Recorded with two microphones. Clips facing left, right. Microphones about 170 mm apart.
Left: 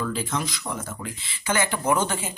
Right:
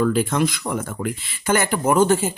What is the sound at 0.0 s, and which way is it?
Speech, 55° right (ahead or behind).